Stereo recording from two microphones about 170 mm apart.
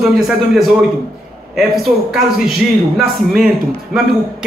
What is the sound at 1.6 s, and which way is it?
A man's voice, centre (ahead or behind).